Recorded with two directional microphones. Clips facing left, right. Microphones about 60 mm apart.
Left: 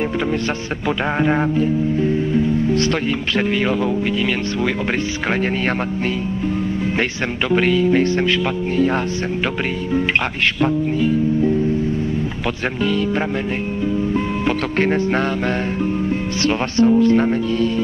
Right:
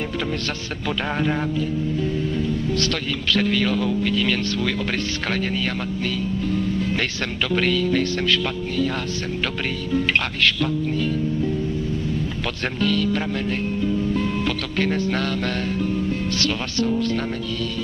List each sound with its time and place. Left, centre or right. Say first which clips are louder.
1.2 s speech: left 8 dB; left
7.5 s speech: left 5 dB; left
12.8 s speech: left 2 dB; left
16.4 s speech: left 10 dB; left